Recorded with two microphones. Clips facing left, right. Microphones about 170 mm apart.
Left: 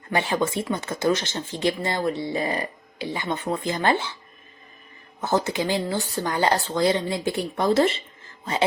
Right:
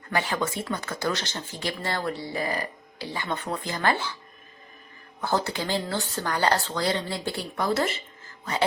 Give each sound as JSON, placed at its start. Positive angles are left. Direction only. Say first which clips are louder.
{"t": 0.1, "sound": "speech", "louder": "left 4 dB", "side_deg": 25}
{"t": 5.2, "sound": "speech", "louder": "left 4 dB", "side_deg": 20}